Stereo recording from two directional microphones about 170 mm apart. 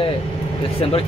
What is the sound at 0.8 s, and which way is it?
Speech, 35° left (ahead or behind).